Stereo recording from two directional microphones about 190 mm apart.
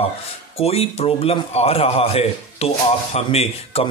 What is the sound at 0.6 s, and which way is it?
A man's voice, 35° left (ahead or behind).